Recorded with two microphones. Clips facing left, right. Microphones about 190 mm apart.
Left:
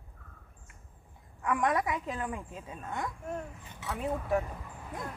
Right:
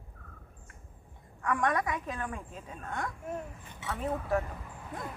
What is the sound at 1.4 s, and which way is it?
A woman's voice, 20° left (ahead or behind).